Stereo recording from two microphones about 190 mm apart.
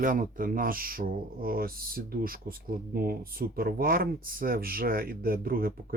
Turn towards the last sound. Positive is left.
turn(degrees=-50)  # may be behind; listen again after turning